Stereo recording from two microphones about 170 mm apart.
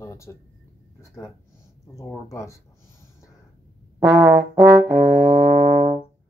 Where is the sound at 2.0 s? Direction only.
20° left (ahead or behind).